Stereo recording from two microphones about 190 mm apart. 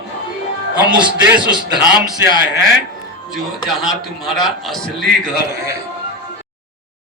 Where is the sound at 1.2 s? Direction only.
5° right (ahead or behind).